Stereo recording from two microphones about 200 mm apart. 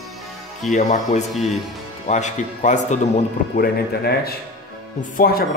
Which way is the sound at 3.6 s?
50° left (ahead or behind).